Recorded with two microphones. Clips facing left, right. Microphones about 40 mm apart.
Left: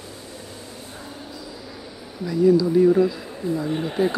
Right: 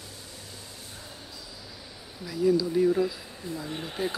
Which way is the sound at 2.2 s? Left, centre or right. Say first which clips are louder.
Left 7 dB; centre.